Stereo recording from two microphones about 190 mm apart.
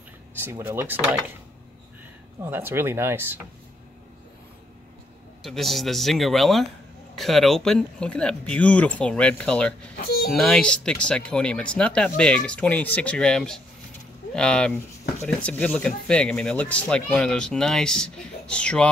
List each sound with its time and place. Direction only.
0.4 s speech: 10° right (ahead or behind)
2.4 s speech: 10° right (ahead or behind)
5.4 s speech: centre (ahead or behind)
9.9 s a sound: 50° left (ahead or behind)
10.3 s speech: 5° left (ahead or behind)